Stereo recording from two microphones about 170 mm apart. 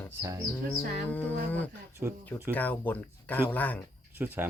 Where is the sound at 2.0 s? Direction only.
10° right (ahead or behind).